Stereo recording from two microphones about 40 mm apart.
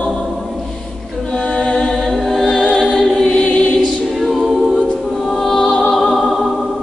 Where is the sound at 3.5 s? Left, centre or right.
Left.